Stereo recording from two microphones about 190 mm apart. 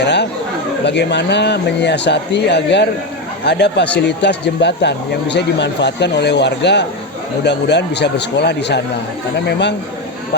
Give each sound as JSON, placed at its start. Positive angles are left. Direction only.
{"t": 0.0, "sound": "chatter", "side_deg": 60}
{"t": 0.9, "sound": "a man's voice", "side_deg": 65}